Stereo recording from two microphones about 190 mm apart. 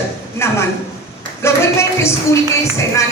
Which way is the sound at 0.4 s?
15° left (ahead or behind).